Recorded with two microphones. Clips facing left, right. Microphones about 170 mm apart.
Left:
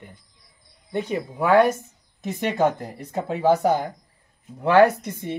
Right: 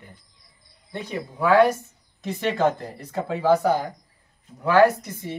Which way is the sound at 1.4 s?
20° left (ahead or behind).